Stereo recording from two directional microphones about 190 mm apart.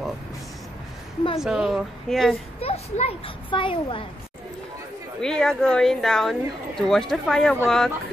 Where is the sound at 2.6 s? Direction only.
30° left (ahead or behind).